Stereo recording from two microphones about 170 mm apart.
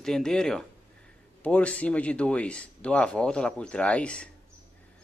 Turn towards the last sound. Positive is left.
turn(degrees=5)  # may be behind; listen again after turning